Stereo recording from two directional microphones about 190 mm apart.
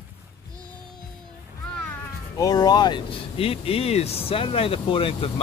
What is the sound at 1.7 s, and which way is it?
Speech, 10° left (ahead or behind).